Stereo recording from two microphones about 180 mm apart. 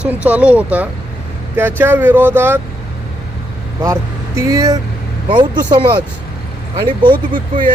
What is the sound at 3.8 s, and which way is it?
Speech, 15° right (ahead or behind).